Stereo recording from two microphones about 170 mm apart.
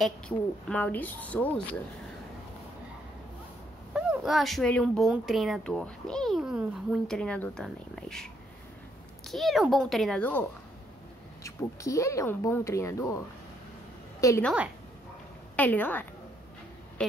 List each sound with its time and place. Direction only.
0.7 s speech: 10° left (ahead or behind)
3.9 s speech: 5° right (ahead or behind)
11.4 s speech: 20° left (ahead or behind)
14.2 s a woman's voice: 20° left (ahead or behind)
15.5 s speech: 10° left (ahead or behind)